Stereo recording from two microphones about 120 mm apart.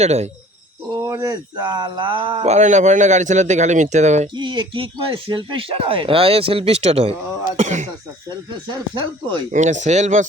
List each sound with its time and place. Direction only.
0.0 s speech: 65° right (ahead or behind)
0.9 s speech: 30° right (ahead or behind)
2.4 s speech: 70° right (ahead or behind)
4.4 s speech: 40° right (ahead or behind); by 7.7 s 55° right (ahead or behind)
9.5 s speech: 85° right